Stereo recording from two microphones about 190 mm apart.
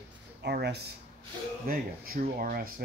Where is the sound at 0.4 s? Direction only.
60° right (ahead or behind).